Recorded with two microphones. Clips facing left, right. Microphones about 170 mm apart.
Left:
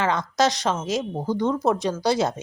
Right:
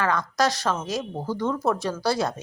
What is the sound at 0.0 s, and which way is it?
A woman's voice, 20° left (ahead or behind).